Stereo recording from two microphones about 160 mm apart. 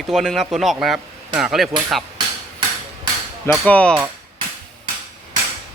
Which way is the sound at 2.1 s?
30° right (ahead or behind).